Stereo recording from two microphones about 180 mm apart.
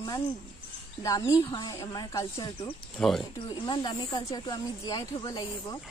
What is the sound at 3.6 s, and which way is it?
Speech, 25° left (ahead or behind).